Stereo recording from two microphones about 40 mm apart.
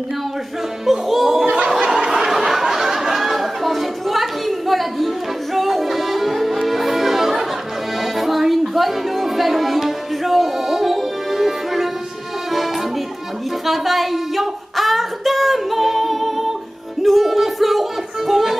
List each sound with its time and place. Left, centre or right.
0.8 s music: centre
1.8 s a sound: centre
2.0 s a sound: centre
8.0 s music: centre
13.7 s female singing: centre
17.0 s music: centre